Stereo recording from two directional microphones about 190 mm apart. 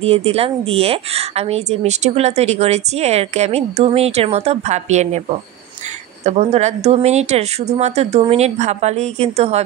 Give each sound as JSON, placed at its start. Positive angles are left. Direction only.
{"t": 0.0, "sound": "a woman's voice", "side_deg": -30}
{"t": 6.2, "sound": "a woman's voice", "side_deg": -35}